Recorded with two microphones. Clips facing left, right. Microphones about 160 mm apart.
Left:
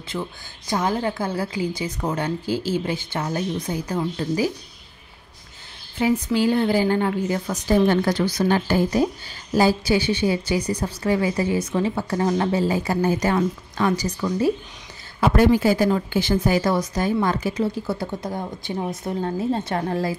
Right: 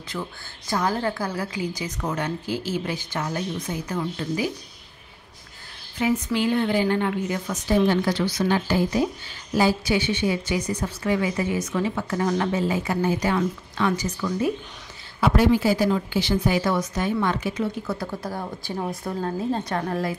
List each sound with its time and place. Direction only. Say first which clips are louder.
0.1 s a woman's voice: left 3 dB; 20° left (ahead or behind)
6.0 s a woman's voice: left 3 dB; 30° left (ahead or behind)
7.8 s a woman's voice: left 2 dB; 50° left (ahead or behind)
15.1 s a woman's voice: left 2 dB; 45° left (ahead or behind); by 20.2 s 30° left (ahead or behind)